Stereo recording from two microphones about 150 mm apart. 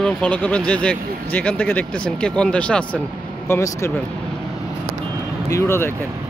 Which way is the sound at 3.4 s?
15° left (ahead or behind).